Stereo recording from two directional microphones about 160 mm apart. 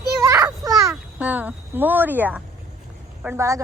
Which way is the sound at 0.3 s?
20° right (ahead or behind).